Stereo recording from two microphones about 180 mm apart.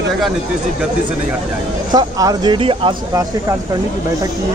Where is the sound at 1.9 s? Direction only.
20° right (ahead or behind).